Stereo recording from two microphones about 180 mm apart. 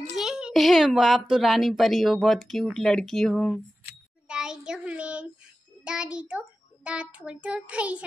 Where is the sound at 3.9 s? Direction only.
5° right (ahead or behind).